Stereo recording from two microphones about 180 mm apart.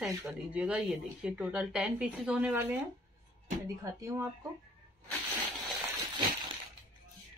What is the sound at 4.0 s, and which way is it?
Speech, 15° right (ahead or behind).